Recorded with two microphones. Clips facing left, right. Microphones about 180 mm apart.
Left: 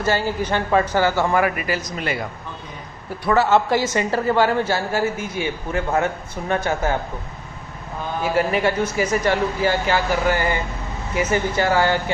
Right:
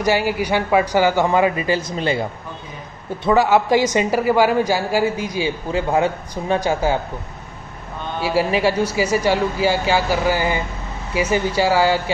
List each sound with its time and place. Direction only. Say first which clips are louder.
0.0 s speech: right 3 dB; 15° right (ahead or behind)
3.3 s speech: right 2 dB; 10° right (ahead or behind)
8.2 s speech: right 2 dB; 10° right (ahead or behind)